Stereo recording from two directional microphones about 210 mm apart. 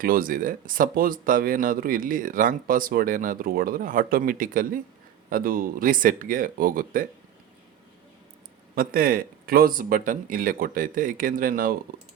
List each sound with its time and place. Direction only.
0.0 s speech: 40° right (ahead or behind)
8.7 s speech: 45° right (ahead or behind)